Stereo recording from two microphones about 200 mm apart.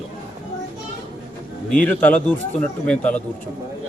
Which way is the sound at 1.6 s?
5° left (ahead or behind).